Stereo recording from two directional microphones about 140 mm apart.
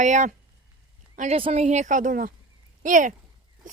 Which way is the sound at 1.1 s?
60° right (ahead or behind).